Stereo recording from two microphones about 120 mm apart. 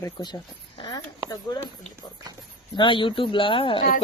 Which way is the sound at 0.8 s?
35° left (ahead or behind).